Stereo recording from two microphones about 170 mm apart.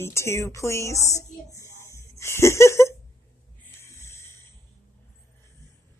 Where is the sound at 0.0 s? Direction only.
15° left (ahead or behind).